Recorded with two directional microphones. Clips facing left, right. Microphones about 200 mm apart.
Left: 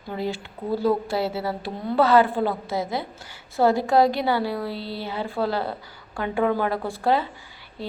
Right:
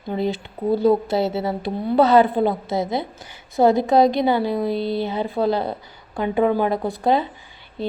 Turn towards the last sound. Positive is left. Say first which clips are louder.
# right 7 dB
turn(degrees=-20)  # may be behind; listen again after turning